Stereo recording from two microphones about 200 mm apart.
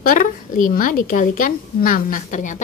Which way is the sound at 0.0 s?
45° left (ahead or behind).